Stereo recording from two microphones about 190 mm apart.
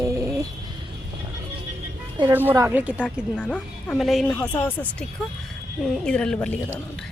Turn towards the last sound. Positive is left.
turn(degrees=5)  # may be behind; listen again after turning